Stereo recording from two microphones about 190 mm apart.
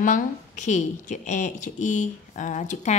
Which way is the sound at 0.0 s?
40° left (ahead or behind).